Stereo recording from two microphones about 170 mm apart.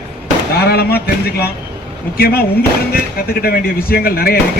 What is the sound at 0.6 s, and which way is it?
Speech, 70° left (ahead or behind).